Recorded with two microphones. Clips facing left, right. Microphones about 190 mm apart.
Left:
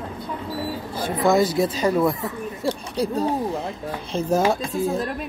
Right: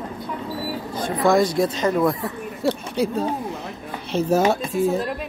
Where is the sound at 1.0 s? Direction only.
5° left (ahead or behind).